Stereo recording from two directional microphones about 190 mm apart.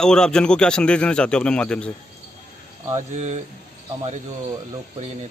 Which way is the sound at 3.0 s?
40° right (ahead or behind).